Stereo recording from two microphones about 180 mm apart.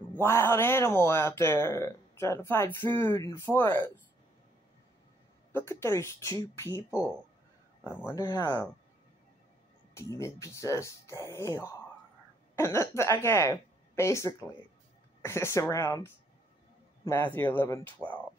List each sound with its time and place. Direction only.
0.1 s speech: 15° left (ahead or behind)
5.7 s speech: 15° left (ahead or behind)
7.8 s speech: 15° left (ahead or behind)
9.9 s speech: 15° left (ahead or behind)